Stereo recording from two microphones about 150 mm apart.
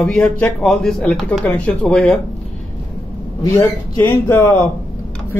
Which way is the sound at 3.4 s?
20° left (ahead or behind).